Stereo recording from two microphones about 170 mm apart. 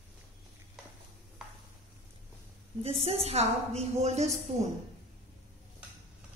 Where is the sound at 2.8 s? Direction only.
35° right (ahead or behind).